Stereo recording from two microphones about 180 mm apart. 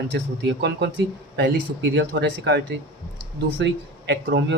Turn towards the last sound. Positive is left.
turn(degrees=-75)  # may be behind; listen again after turning